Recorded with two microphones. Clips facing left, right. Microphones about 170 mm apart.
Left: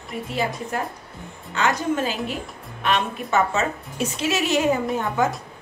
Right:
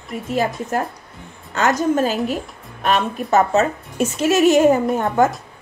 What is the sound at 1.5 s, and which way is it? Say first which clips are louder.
A woman's voice: right 5 dB; 40° right (ahead or behind).